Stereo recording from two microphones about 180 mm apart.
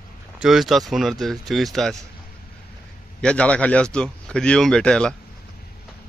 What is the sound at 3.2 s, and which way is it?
Speech, 5° left (ahead or behind).